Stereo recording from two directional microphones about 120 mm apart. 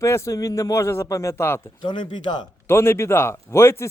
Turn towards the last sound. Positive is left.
turn(degrees=20)  # may be behind; listen again after turning